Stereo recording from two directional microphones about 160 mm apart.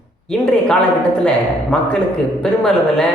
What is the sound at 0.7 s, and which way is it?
A woman's voice, 5° left (ahead or behind).